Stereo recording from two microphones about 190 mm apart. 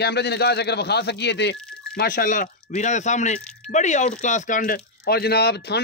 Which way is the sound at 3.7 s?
40° left (ahead or behind).